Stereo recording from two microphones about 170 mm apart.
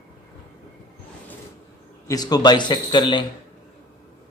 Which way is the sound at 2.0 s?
25° left (ahead or behind).